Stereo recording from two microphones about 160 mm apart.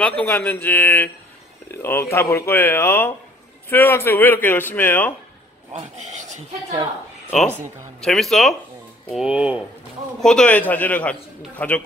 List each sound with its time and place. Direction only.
0.0 s a man's voice: 10° left (ahead or behind)
5.7 s speech: 45° right (ahead or behind)
8.0 s speech: centre (ahead or behind)
10.2 s a man's voice: 5° left (ahead or behind)